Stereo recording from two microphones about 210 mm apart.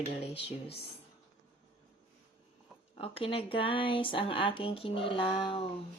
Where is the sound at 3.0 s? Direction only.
25° left (ahead or behind).